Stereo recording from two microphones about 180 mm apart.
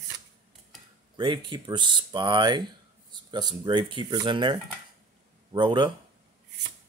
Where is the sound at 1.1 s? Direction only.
25° right (ahead or behind).